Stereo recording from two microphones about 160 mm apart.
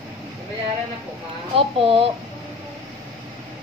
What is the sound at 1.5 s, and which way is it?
Speech, 35° right (ahead or behind).